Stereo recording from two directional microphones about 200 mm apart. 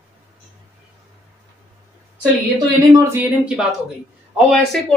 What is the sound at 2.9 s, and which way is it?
Speech, 15° right (ahead or behind).